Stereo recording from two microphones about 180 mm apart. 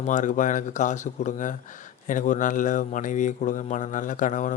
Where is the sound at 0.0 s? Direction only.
45° left (ahead or behind).